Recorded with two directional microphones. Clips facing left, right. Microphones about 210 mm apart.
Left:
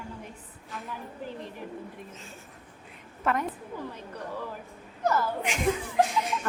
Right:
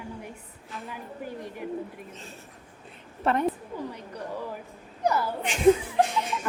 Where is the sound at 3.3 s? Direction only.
30° right (ahead or behind).